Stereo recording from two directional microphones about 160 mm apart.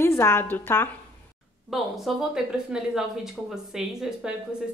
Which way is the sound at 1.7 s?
Centre (ahead or behind).